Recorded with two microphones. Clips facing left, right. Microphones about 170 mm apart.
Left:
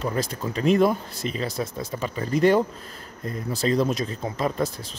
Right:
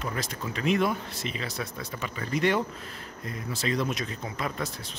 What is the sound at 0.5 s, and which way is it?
Speech, 35° left (ahead or behind).